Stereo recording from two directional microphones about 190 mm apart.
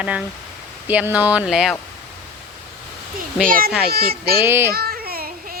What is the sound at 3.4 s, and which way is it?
Speech, 45° right (ahead or behind).